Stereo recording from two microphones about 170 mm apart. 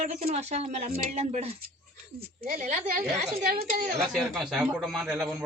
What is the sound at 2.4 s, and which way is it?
Speech, 50° right (ahead or behind).